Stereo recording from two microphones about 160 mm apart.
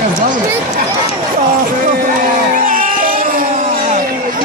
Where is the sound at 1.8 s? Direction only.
55° right (ahead or behind).